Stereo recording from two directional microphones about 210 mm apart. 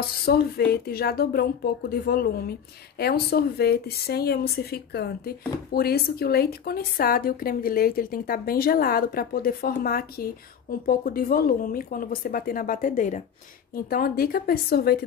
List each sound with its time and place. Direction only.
0.0 s speech: 45° left (ahead or behind)